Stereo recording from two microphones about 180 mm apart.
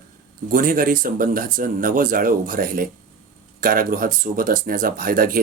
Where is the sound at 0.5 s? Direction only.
50° right (ahead or behind).